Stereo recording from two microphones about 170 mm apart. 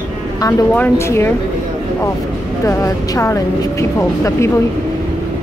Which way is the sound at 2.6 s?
20° left (ahead or behind).